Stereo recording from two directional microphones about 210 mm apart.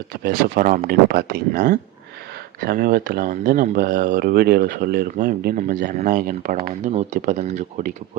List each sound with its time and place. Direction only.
0.1 s speech: 45° right (ahead or behind)